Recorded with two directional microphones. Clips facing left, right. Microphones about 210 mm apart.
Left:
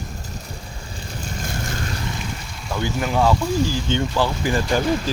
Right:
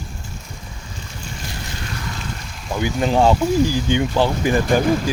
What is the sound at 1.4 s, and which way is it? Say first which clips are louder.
Vehicle: left 5 dB; 45° left (ahead or behind).